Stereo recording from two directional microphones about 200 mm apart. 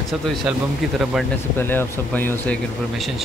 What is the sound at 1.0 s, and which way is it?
Speech, 5° right (ahead or behind).